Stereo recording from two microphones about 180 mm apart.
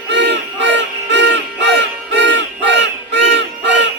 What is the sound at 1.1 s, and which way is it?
Battle cry, 80° right.